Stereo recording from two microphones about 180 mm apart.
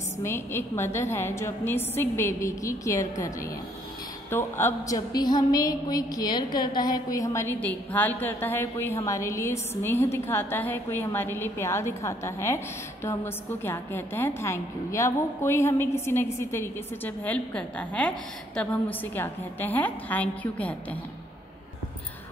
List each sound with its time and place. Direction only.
0.2 s a woman's voice: 15° left (ahead or behind)